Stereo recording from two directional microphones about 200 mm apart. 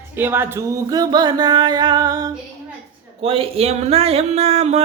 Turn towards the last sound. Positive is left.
turn(degrees=-30)  # may be behind; listen again after turning